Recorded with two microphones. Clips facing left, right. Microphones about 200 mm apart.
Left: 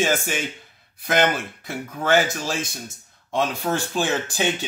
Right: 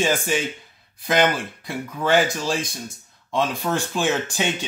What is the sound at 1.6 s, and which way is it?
Speech, centre (ahead or behind).